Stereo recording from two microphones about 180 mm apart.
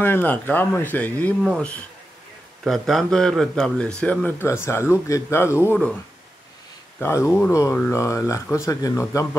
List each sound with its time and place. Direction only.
0.0 s speech: 10° left (ahead or behind)
7.0 s speech: 15° left (ahead or behind)